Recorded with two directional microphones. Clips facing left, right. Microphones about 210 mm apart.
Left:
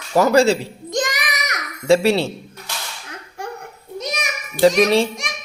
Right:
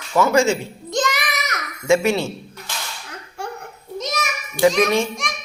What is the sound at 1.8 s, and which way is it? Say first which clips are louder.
Speech: left 2 dB; 35° left (ahead or behind).